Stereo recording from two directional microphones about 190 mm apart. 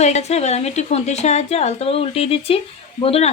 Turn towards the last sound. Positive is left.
turn(degrees=30)  # may be behind; listen again after turning